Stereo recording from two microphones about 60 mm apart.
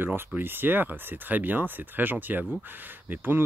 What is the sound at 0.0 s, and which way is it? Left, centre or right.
Speech, right.